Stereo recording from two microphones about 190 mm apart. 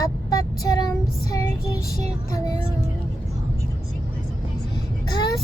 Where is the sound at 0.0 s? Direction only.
20° left (ahead or behind).